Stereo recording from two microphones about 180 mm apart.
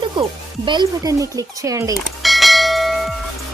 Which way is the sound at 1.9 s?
Centre (ahead or behind).